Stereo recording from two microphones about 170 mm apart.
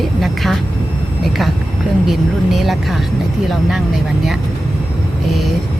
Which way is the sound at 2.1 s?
Centre (ahead or behind).